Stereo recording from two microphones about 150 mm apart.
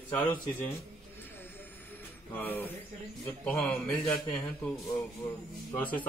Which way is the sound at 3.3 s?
10° left (ahead or behind).